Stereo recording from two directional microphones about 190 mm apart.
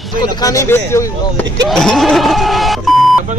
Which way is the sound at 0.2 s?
20° left (ahead or behind).